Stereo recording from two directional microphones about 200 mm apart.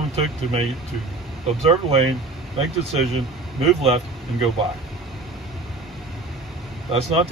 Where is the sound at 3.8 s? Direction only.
30° right (ahead or behind).